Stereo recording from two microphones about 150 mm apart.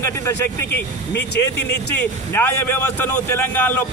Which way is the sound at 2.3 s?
15° left (ahead or behind).